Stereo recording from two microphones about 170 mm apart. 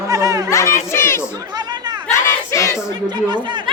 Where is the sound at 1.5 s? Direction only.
25° right (ahead or behind).